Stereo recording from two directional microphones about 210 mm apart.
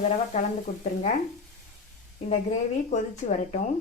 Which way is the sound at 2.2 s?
35° left (ahead or behind).